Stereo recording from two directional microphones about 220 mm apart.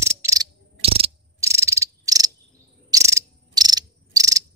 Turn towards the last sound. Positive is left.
turn(degrees=-15)  # may be behind; listen again after turning